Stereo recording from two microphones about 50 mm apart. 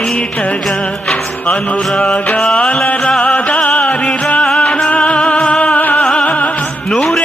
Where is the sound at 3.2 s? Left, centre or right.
Left.